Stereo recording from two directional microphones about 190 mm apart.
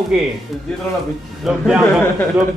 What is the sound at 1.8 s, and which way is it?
Speech, 10° left (ahead or behind).